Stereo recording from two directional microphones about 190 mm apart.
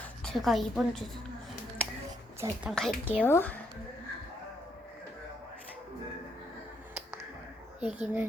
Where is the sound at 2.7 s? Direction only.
Centre (ahead or behind).